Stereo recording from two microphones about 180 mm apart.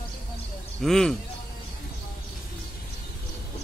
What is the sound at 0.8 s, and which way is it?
Speech, centre (ahead or behind).